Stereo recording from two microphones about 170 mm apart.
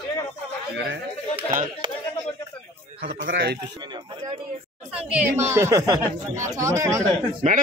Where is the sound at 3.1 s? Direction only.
90° right.